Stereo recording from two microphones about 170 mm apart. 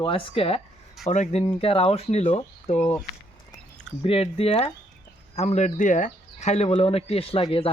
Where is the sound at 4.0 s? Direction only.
35° left (ahead or behind).